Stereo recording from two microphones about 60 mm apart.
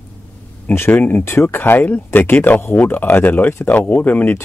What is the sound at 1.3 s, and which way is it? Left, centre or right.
Speech, left.